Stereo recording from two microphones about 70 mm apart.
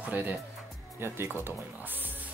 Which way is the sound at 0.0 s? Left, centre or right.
Right.